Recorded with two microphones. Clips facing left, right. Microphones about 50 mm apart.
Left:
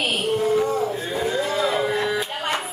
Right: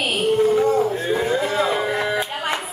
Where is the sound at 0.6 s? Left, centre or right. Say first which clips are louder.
Right 4 dB; right.